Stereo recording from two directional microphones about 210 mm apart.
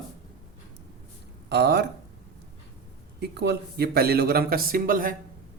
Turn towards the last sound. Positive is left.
turn(degrees=-40)  # may be behind; listen again after turning